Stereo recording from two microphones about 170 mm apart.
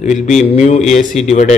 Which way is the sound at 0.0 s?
45° left (ahead or behind).